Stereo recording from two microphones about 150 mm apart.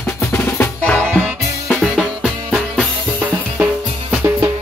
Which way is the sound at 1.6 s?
Centre (ahead or behind).